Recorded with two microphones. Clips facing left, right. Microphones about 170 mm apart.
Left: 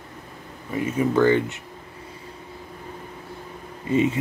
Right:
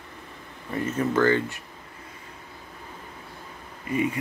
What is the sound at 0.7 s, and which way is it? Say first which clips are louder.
Speech: left 3 dB; 10° left (ahead or behind).